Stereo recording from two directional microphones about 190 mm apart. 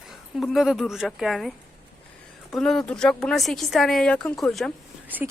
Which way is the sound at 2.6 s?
5° left (ahead or behind).